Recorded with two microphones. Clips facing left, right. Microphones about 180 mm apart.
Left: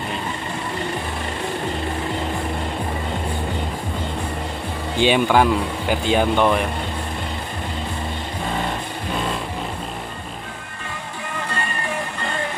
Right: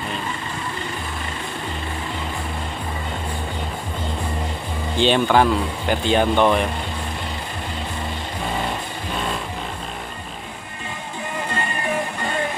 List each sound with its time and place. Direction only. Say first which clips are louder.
4.9 s speech: even; 10° left (ahead or behind)